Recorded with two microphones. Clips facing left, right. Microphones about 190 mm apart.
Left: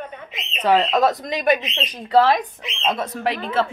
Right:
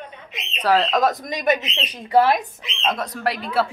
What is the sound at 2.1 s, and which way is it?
Speech, 10° right (ahead or behind).